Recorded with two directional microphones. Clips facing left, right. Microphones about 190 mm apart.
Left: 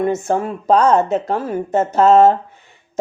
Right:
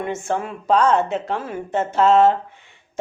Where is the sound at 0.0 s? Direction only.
40° left (ahead or behind).